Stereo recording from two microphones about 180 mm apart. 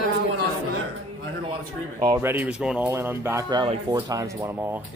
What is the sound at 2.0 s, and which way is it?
Speech, 15° right (ahead or behind).